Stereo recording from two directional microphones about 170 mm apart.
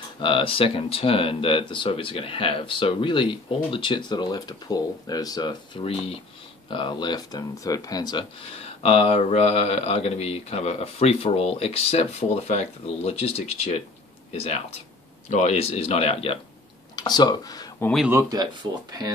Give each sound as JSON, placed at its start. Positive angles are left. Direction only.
{"t": 0.2, "sound": "speech", "side_deg": 30}
{"t": 16.9, "sound": "speech", "side_deg": 25}
{"t": 18.1, "sound": "speech", "side_deg": -25}